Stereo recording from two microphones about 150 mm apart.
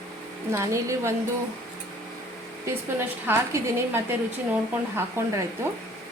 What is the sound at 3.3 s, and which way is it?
A woman's voice, 20° right (ahead or behind).